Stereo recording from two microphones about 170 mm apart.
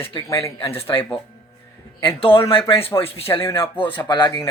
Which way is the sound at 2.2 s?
35° left (ahead or behind).